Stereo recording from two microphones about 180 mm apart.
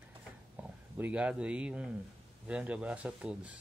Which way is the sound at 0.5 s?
5° right (ahead or behind).